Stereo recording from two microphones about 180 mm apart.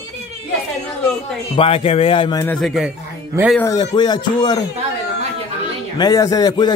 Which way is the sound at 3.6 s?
20° left (ahead or behind).